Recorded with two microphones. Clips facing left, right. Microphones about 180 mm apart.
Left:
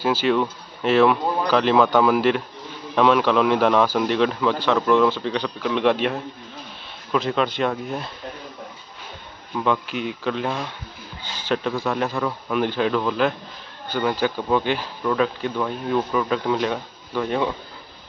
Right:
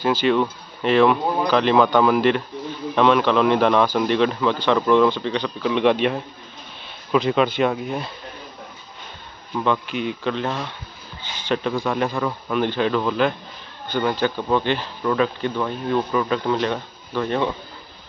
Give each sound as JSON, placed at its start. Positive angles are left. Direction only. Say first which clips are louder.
{"t": 0.0, "sound": "speech", "louder": "right 1 dB", "side_deg": 5}
{"t": 9.6, "sound": "speech", "louder": "right 1 dB", "side_deg": 0}